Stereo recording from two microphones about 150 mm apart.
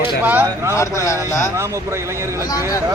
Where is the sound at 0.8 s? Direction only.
20° left (ahead or behind).